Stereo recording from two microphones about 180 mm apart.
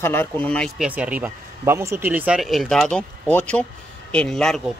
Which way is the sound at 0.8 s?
10° right (ahead or behind).